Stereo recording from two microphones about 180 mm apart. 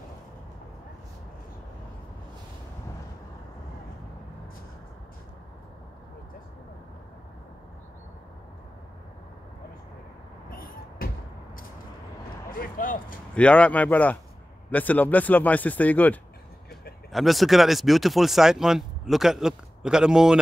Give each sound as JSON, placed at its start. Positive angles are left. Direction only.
{"t": 10.5, "sound": "a sound", "side_deg": 55}
{"t": 12.4, "sound": "speech", "side_deg": 50}
{"t": 13.3, "sound": "speech", "side_deg": 5}